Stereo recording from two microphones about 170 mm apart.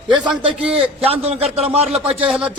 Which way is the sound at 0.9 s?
35° right (ahead or behind).